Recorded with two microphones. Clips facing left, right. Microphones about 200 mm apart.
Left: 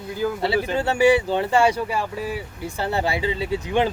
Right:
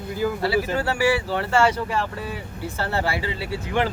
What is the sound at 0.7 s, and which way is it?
Speech, 20° left (ahead or behind).